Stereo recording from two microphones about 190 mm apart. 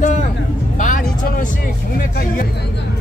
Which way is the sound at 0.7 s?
45° left (ahead or behind).